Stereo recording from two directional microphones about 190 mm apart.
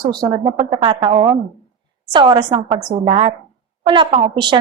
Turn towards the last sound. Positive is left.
turn(degrees=-30)  # may be behind; listen again after turning